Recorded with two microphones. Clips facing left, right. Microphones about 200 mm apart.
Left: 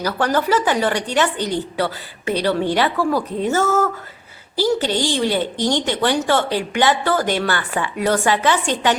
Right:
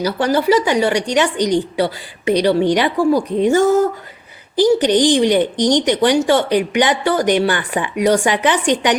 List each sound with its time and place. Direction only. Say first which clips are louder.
0.0 s a woman's voice: right 3 dB; 10° right (ahead or behind)